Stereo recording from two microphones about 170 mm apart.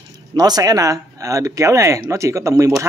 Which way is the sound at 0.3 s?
20° right (ahead or behind).